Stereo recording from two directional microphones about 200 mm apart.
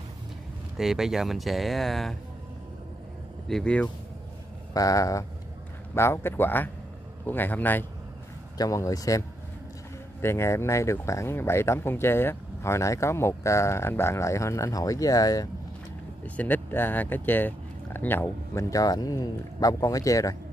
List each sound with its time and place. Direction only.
0.7 s speech: centre (ahead or behind)
3.4 s speech: 5° left (ahead or behind)
4.7 s speech: 15° left (ahead or behind)
10.2 s speech: 15° left (ahead or behind)